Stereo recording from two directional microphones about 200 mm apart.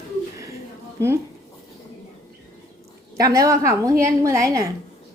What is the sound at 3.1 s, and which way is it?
A woman's voice, 20° right (ahead or behind).